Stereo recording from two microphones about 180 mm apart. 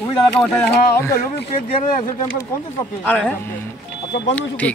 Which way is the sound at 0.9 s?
15° left (ahead or behind).